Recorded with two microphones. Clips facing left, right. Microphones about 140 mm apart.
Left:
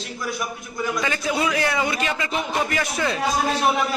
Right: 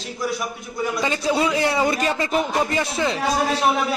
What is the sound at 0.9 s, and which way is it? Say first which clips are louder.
Speech: right 3 dB; 30° right (ahead or behind).